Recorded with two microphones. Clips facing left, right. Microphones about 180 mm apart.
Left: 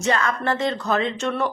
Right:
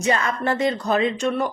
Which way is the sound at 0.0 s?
15° right (ahead or behind).